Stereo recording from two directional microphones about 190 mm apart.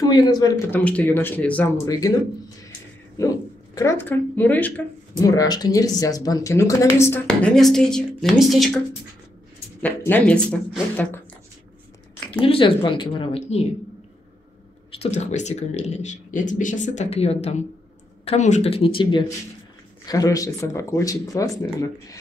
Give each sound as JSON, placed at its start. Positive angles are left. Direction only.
{"t": 0.0, "sound": "speech", "side_deg": 20}
{"t": 1.9, "sound": "speech", "side_deg": 20}
{"t": 3.2, "sound": "speech", "side_deg": 15}
{"t": 9.8, "sound": "speech", "side_deg": 10}
{"t": 12.4, "sound": "speech", "side_deg": 30}
{"t": 15.0, "sound": "speech", "side_deg": 35}